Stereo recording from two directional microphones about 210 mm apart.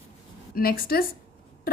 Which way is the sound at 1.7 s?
45° left (ahead or behind).